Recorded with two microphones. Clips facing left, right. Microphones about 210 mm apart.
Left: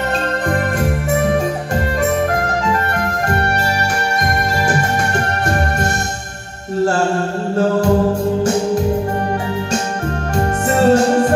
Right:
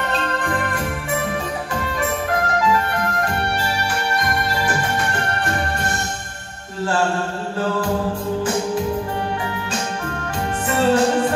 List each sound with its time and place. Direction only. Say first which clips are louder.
10.7 s music: left 5 dB; 45° left (ahead or behind)